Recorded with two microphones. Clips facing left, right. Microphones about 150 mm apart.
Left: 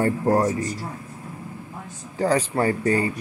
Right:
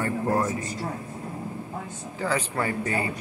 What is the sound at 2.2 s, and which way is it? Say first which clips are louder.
Speech: left 6 dB; 40° left (ahead or behind).